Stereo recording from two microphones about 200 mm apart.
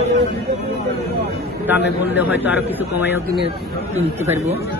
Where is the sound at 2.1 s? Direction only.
10° right (ahead or behind).